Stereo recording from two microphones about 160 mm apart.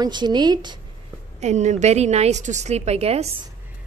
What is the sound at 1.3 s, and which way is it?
A woman's voice, 45° right (ahead or behind).